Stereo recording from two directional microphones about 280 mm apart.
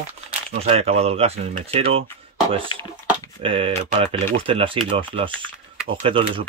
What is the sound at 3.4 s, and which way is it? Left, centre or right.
Speech, centre.